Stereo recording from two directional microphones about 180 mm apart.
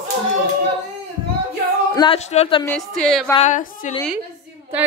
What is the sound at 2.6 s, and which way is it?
Speech, 5° left (ahead or behind).